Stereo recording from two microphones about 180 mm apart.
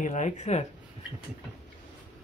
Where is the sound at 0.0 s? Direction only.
40° left (ahead or behind).